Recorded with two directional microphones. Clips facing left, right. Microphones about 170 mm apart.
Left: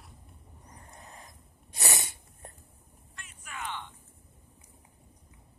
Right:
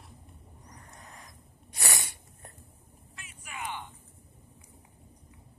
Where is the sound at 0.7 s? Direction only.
25° left (ahead or behind).